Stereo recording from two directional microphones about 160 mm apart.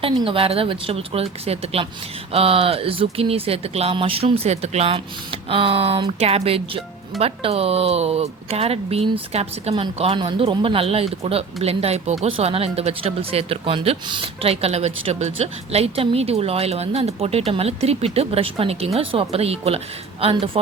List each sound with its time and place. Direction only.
0.1 s speech: 30° right (ahead or behind)